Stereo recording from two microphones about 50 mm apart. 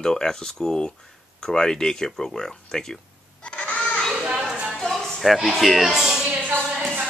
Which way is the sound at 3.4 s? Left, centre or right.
Left.